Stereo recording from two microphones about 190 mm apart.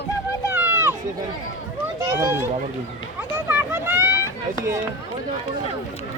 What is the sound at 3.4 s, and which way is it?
Run, 10° right (ahead or behind).